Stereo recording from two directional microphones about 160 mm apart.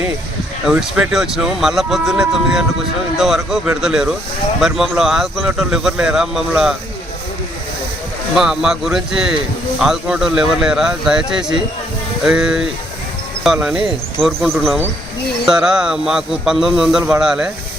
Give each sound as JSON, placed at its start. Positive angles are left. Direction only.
{"t": 0.7, "sound": "speech", "side_deg": -5}
{"t": 8.4, "sound": "speech", "side_deg": -5}